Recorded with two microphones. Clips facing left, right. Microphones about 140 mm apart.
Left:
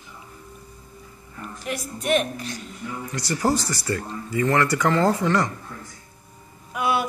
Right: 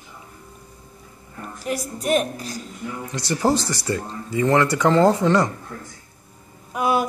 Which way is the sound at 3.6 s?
75° right (ahead or behind).